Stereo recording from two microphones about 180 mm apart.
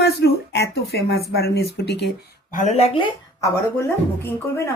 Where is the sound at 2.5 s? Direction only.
40° left (ahead or behind).